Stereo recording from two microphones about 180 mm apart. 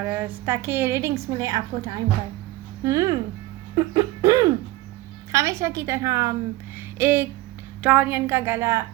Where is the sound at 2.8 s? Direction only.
20° right (ahead or behind).